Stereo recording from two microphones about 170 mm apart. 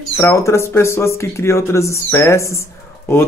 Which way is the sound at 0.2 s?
15° left (ahead or behind).